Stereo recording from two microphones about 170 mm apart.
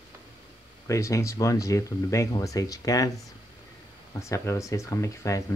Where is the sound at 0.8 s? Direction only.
20° left (ahead or behind).